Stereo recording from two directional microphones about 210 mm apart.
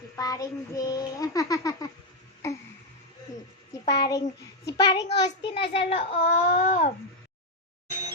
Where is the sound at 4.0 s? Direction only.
15° left (ahead or behind).